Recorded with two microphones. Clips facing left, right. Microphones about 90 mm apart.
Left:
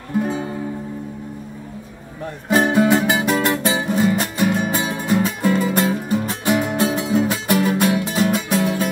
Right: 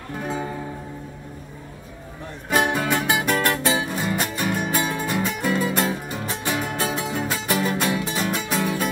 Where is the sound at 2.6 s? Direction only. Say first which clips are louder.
Left 10 dB; 20° left (ahead or behind).